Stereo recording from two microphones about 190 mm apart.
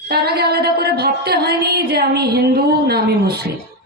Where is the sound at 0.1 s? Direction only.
55° right (ahead or behind).